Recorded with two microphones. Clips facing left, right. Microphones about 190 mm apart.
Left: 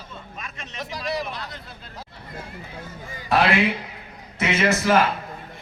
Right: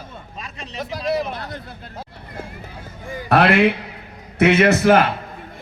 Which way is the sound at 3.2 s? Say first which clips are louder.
Right 5 dB; 60° right (ahead or behind).